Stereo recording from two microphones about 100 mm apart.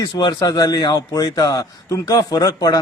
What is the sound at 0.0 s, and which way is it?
A man's voice, 50° left (ahead or behind).